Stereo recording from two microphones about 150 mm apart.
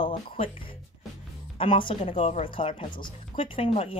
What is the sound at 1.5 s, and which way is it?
Speech, 35° left (ahead or behind).